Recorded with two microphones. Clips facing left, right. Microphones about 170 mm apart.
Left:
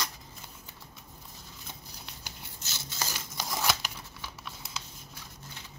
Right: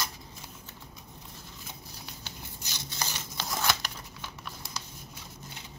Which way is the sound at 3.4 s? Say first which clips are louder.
Even; centre (ahead or behind).